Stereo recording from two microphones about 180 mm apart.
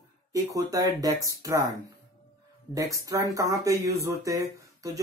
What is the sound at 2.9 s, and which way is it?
Speech, 20° right (ahead or behind).